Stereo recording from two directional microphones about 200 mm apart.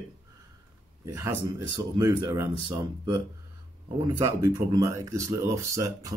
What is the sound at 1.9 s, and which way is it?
Speech, 15° right (ahead or behind).